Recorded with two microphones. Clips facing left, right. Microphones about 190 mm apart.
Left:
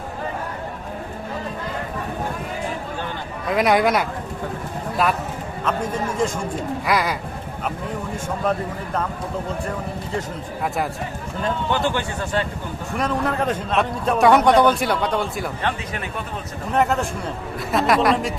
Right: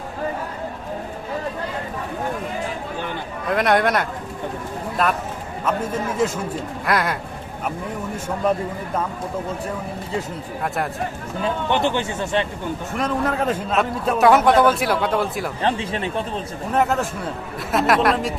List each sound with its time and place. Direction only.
3.5 s a man's voice: centre (ahead or behind)
6.8 s a man's voice: centre (ahead or behind)
11.7 s speech: 20° right (ahead or behind)
13.0 s a man's voice: centre (ahead or behind)
15.6 s speech: 30° right (ahead or behind)
16.7 s a man's voice: centre (ahead or behind)